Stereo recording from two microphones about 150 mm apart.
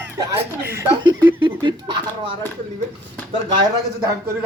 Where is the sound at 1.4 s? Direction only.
35° right (ahead or behind).